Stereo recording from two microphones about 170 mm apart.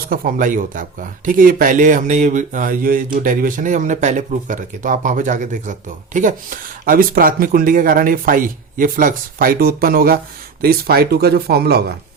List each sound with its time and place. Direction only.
0.1 s speech: 55° right (ahead or behind)